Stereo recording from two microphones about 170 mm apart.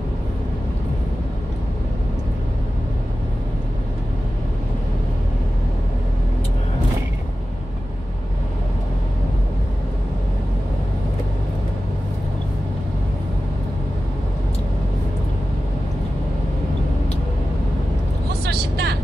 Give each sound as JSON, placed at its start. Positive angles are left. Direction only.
{"t": 18.4, "sound": "vehicle", "side_deg": -70}